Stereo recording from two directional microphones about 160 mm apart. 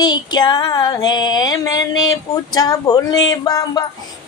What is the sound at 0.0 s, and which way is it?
Female singing, 25° left (ahead or behind).